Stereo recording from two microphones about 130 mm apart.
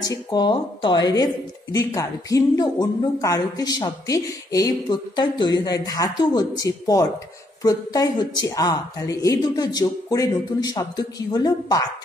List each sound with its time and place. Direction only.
0.1 s a woman's voice: 35° left (ahead or behind)